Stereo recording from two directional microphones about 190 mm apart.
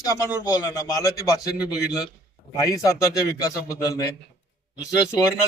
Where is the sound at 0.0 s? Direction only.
15° left (ahead or behind).